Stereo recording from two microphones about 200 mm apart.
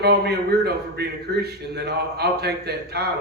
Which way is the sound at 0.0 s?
55° right (ahead or behind).